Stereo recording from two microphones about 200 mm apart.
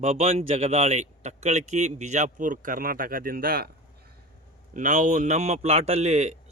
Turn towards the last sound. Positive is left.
turn(degrees=-35)  # may be behind; listen again after turning